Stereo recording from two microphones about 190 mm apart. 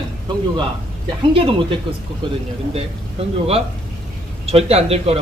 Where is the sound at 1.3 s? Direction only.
30° right (ahead or behind).